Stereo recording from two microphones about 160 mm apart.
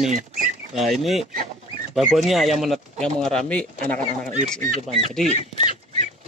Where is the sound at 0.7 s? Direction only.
Centre (ahead or behind).